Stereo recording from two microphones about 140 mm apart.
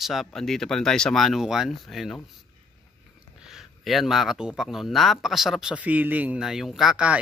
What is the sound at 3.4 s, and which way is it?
Speech, centre (ahead or behind).